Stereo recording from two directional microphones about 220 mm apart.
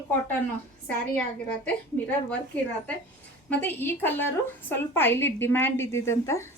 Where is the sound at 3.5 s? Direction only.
5° left (ahead or behind).